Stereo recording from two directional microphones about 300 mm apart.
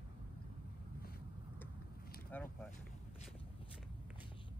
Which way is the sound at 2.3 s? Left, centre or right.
Centre.